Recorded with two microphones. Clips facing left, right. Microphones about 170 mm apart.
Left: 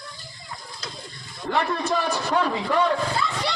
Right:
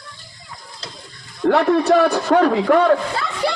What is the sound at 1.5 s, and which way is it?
A man's voice, 70° right (ahead or behind).